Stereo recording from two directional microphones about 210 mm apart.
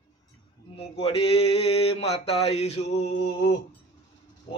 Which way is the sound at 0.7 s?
25° left (ahead or behind).